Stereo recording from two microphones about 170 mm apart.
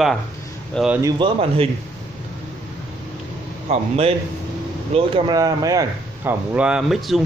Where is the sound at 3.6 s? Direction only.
35° right (ahead or behind); by 6.3 s 20° right (ahead or behind).